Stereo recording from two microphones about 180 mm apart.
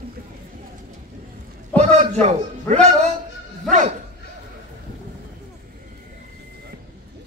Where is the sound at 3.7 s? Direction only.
45° right (ahead or behind).